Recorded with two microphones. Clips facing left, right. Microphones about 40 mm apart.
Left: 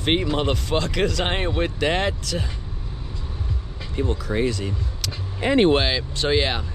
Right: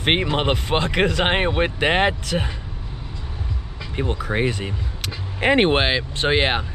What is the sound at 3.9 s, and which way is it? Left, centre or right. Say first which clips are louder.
Speech: right 1 dB; right.